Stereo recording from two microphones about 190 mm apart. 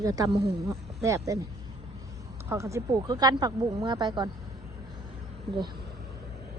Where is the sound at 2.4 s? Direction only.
15° right (ahead or behind).